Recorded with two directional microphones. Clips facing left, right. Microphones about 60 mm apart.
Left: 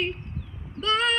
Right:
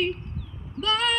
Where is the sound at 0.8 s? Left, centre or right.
Left.